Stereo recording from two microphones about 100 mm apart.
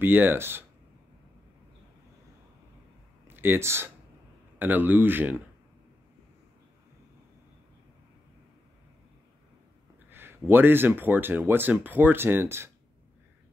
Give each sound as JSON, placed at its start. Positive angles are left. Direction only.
{"t": 0.0, "sound": "speech", "side_deg": -20}
{"t": 3.3, "sound": "speech", "side_deg": -20}
{"t": 10.0, "sound": "speech", "side_deg": -20}